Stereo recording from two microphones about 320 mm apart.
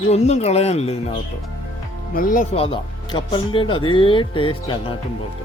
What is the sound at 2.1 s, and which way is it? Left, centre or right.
Speech, left.